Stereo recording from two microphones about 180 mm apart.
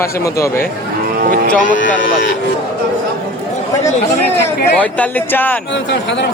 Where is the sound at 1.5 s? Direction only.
45° left (ahead or behind).